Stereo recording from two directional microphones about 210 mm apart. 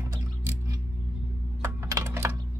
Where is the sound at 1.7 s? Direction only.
15° right (ahead or behind).